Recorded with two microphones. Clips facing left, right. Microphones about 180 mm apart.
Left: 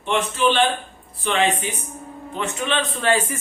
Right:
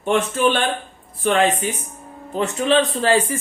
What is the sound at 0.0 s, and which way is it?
Speech, 50° right (ahead or behind).